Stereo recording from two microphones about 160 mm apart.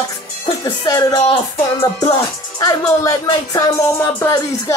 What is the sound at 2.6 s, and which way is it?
Speech, 20° left (ahead or behind).